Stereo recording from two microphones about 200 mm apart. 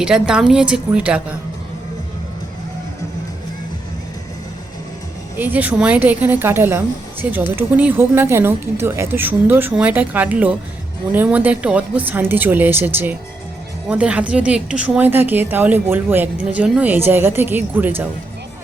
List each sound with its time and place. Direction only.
0.0 s a woman's voice: 5° right (ahead or behind)
5.4 s a woman's voice: 10° right (ahead or behind)